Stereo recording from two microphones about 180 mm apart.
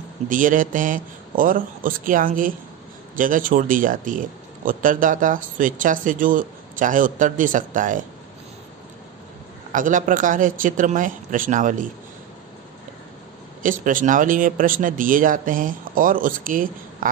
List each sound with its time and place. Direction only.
0.3 s speech: 50° right (ahead or behind)
9.7 s speech: 45° right (ahead or behind)
13.6 s speech: 50° right (ahead or behind)